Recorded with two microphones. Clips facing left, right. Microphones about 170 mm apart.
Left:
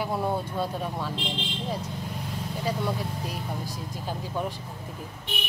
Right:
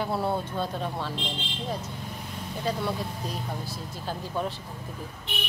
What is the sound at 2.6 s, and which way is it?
Speech, 10° left (ahead or behind).